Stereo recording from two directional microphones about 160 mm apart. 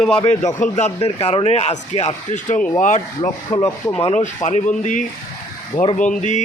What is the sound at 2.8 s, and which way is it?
Speech, 50° left (ahead or behind).